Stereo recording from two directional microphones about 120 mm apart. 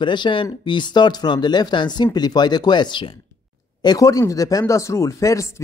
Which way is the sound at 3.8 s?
30° left (ahead or behind).